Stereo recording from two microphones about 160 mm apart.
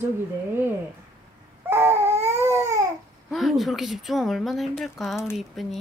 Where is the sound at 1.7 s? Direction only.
15° right (ahead or behind).